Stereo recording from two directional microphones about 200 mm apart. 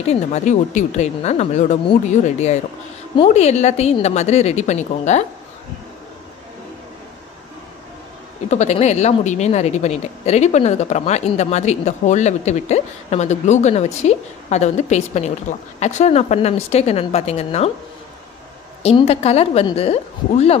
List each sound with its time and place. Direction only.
0.1 s a woman's voice: 35° left (ahead or behind)
8.5 s a woman's voice: 35° left (ahead or behind)
18.8 s a woman's voice: 30° left (ahead or behind)